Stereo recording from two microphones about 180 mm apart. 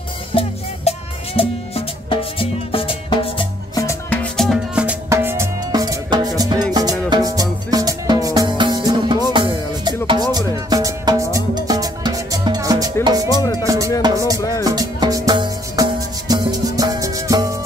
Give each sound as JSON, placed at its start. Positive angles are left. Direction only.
{"t": 0.3, "sound": "music", "side_deg": 30}
{"t": 4.1, "sound": "music", "side_deg": 5}
{"t": 13.3, "sound": "music", "side_deg": 20}
{"t": 13.7, "sound": "music", "side_deg": -15}